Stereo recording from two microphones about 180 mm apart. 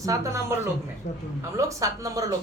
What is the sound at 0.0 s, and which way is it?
A woman's voice, 15° right (ahead or behind).